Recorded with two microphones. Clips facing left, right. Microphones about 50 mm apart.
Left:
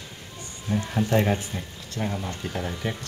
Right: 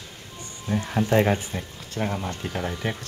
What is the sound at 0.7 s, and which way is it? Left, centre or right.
Speech, centre.